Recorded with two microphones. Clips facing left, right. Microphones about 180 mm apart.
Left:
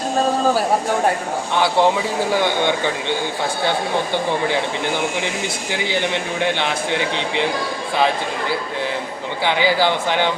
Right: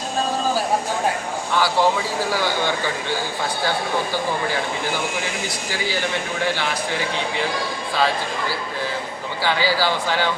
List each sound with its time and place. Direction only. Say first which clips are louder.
1.5 s speech: left 2 dB; 20° left (ahead or behind)
5.7 s speech: left 3 dB; 20° left (ahead or behind)
7.9 s speech: left 3 dB; 20° left (ahead or behind)